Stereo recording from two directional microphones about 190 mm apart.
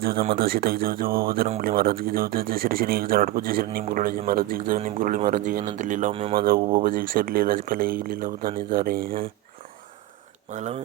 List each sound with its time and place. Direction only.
0.0 s speech: 50° right (ahead or behind); by 6.4 s 30° right (ahead or behind)
6.8 s speech: 50° right (ahead or behind)
10.5 s speech: 35° right (ahead or behind)